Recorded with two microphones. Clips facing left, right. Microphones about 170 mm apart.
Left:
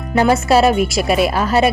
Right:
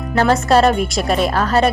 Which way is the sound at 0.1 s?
10° left (ahead or behind).